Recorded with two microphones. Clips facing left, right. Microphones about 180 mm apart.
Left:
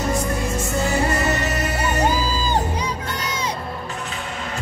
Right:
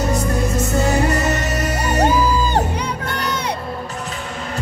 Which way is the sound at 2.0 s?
65° right (ahead or behind).